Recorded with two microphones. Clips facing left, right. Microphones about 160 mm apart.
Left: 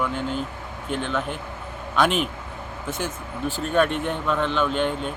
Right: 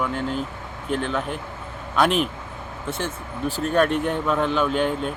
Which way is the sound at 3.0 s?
35° right (ahead or behind).